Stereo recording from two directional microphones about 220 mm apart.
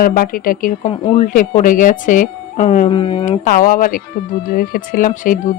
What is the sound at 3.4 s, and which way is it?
A woman's voice, 40° left (ahead or behind).